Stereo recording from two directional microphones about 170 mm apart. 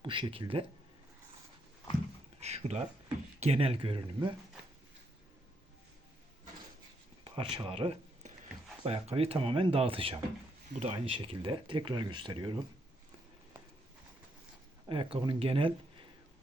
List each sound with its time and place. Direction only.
0.0 s speech: 30° right (ahead or behind)
2.4 s speech: 40° right (ahead or behind)
7.3 s speech: 30° right (ahead or behind)
14.8 s speech: 30° right (ahead or behind)